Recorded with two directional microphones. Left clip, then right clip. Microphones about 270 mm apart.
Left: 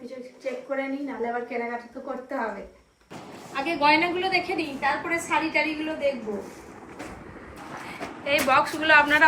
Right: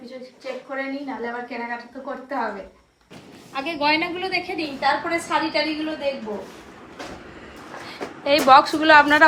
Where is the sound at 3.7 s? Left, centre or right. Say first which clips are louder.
Left 1 dB; centre.